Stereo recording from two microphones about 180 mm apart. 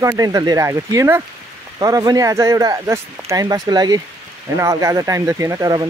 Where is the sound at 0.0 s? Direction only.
20° right (ahead or behind).